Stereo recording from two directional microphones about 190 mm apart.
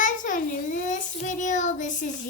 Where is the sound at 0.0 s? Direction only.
45° left (ahead or behind).